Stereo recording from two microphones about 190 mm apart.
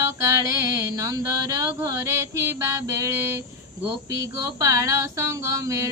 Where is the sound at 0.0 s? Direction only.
15° right (ahead or behind).